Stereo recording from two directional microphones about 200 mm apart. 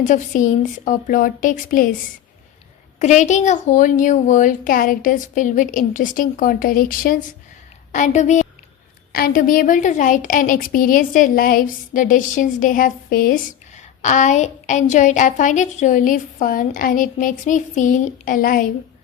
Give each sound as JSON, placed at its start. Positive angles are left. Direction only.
{"t": 0.0, "sound": "a woman's voice", "side_deg": 40}
{"t": 3.0, "sound": "a woman's voice", "side_deg": 35}
{"t": 9.1, "sound": "a woman's voice", "side_deg": 45}